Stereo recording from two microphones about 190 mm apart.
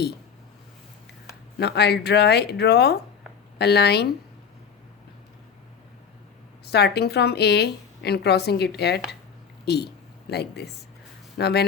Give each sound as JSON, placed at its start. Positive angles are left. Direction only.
{"t": 1.5, "sound": "a woman's voice", "side_deg": 60}
{"t": 6.7, "sound": "a woman's voice", "side_deg": 60}